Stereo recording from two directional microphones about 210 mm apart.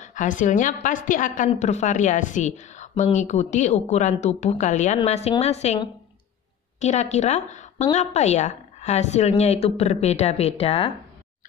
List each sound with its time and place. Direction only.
0.0 s a woman's voice: 35° left (ahead or behind)